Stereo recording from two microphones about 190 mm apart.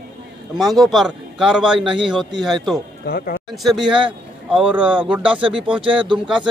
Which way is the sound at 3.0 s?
50° left (ahead or behind).